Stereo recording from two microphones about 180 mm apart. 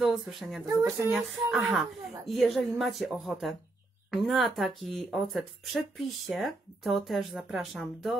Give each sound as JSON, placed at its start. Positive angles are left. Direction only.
{"t": 0.0, "sound": "speech", "side_deg": 0}
{"t": 0.7, "sound": "speech", "side_deg": -15}
{"t": 1.1, "sound": "speech", "side_deg": 0}